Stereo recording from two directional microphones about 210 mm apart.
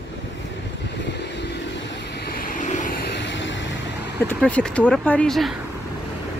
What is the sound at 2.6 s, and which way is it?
Vehicle, 35° left (ahead or behind).